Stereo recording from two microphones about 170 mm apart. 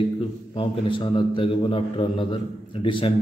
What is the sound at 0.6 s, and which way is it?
A man's voice, 30° left (ahead or behind).